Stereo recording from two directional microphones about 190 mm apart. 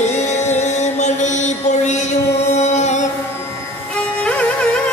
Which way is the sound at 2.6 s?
35° left (ahead or behind).